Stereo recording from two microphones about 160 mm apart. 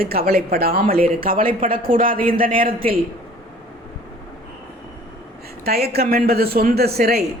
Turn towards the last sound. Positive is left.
turn(degrees=-75)  # may be behind; listen again after turning